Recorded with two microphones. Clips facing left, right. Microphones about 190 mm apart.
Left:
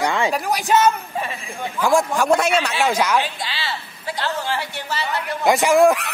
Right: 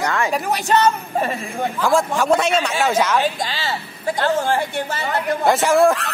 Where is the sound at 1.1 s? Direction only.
50° right (ahead or behind).